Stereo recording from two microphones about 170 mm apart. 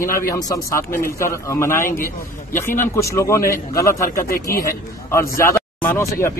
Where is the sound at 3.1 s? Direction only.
15° left (ahead or behind).